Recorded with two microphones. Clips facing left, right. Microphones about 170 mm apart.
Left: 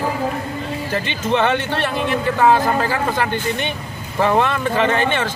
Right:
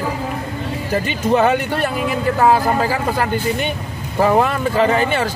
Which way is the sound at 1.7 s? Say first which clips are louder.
Right 1 dB; 10° right (ahead or behind).